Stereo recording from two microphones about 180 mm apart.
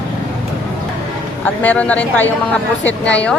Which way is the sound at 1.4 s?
10° left (ahead or behind).